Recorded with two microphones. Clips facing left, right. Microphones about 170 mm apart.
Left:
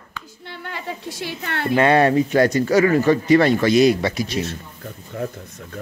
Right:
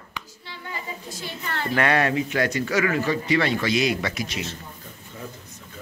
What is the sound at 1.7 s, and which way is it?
Speech, 25° left (ahead or behind).